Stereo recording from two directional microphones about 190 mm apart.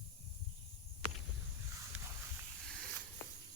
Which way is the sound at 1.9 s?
10° right (ahead or behind).